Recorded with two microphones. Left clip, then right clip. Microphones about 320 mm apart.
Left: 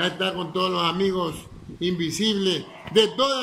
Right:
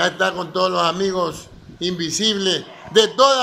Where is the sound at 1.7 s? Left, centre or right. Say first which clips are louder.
Right 2 dB; centre.